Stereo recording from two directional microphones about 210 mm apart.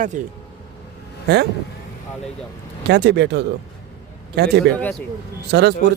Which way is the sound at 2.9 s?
50° right (ahead or behind).